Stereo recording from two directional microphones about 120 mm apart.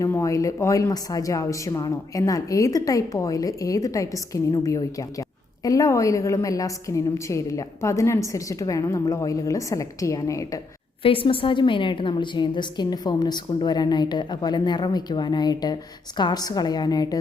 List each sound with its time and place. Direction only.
0.0 s a woman's voice: 25° left (ahead or behind)
11.0 s a woman's voice: 50° left (ahead or behind); by 17.2 s 30° left (ahead or behind)